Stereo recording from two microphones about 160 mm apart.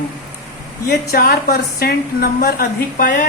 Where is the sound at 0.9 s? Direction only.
75° left (ahead or behind).